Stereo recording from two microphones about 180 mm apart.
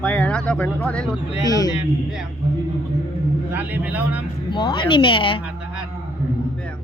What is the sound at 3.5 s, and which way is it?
Speech, 10° right (ahead or behind).